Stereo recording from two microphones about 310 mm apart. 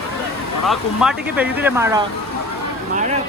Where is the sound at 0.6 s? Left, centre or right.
Centre.